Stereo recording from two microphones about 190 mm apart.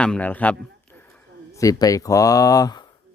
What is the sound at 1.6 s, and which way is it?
Speech, 20° left (ahead or behind).